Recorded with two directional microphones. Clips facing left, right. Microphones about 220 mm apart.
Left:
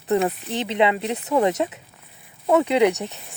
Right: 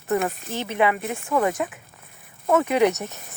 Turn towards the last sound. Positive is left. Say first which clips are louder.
# left 1 dB
turn(degrees=15)  # may be behind; listen again after turning